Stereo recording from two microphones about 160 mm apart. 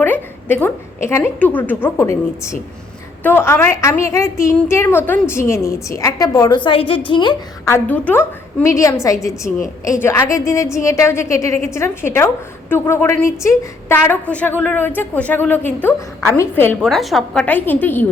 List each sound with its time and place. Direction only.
0.0 s a woman's voice: 15° left (ahead or behind)
3.2 s a woman's voice: 15° left (ahead or behind)
7.7 s a woman's voice: 10° left (ahead or behind)
16.8 s a woman's voice: centre (ahead or behind)
17.4 s a woman's voice: 10° left (ahead or behind)